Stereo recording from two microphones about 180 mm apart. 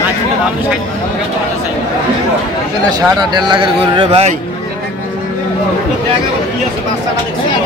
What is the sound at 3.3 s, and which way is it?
A man's voice, 25° right (ahead or behind).